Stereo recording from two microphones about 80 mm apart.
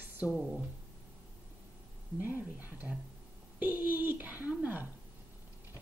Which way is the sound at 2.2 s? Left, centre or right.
Right.